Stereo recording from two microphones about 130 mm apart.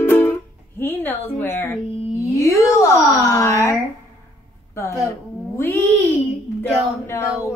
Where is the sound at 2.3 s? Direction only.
20° left (ahead or behind).